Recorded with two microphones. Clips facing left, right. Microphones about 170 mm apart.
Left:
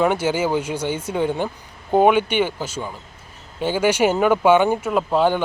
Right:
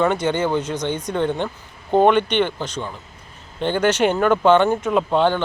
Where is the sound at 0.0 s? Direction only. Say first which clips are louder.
Even; 5° left (ahead or behind).